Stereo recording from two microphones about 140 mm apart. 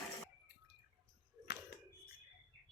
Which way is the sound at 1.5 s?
90° left.